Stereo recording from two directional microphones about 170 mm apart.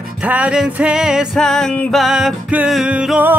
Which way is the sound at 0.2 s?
5° right (ahead or behind).